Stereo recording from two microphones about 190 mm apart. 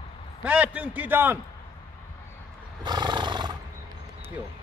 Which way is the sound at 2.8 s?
25° right (ahead or behind).